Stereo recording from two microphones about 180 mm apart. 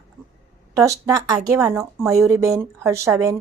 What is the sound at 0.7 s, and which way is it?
A woman's voice, 15° right (ahead or behind).